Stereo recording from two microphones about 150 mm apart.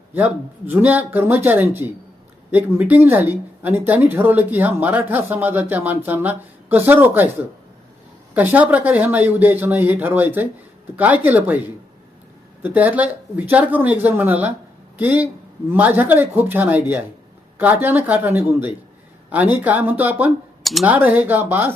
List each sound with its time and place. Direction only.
0.1 s speech: 10° right (ahead or behind)
8.3 s speech: 10° right (ahead or behind)
12.6 s speech: 10° right (ahead or behind)